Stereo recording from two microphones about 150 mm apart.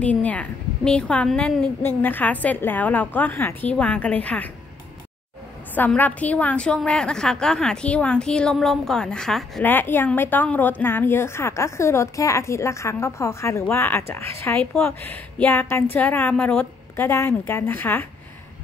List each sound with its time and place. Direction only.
0.0 s a woman's voice: 10° left (ahead or behind)
5.8 s a woman's voice: 10° left (ahead or behind)